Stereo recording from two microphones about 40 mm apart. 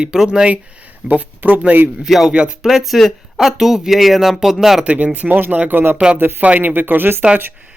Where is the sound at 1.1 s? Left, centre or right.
Right.